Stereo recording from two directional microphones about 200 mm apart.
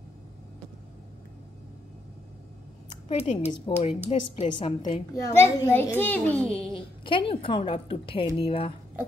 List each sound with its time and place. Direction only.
3.2 s a woman's voice: 30° left (ahead or behind)
4.8 s a child's voice: 20° left (ahead or behind)
6.7 s a woman's voice: 25° left (ahead or behind)